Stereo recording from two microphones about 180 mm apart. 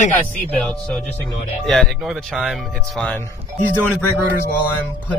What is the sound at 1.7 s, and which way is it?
Speech, centre (ahead or behind).